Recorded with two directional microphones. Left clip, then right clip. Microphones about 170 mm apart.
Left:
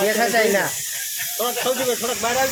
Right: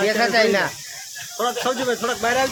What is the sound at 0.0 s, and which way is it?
Speech, centre (ahead or behind).